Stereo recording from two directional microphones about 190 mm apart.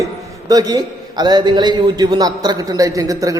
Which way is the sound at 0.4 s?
20° right (ahead or behind).